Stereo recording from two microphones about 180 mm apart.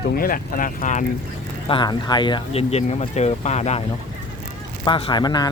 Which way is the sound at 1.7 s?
25° left (ahead or behind).